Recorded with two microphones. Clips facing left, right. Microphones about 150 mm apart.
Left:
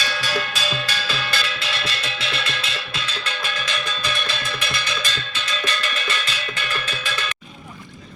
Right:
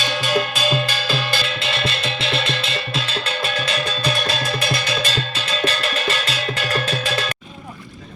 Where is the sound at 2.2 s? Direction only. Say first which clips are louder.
Right 5 dB; 25° right (ahead or behind).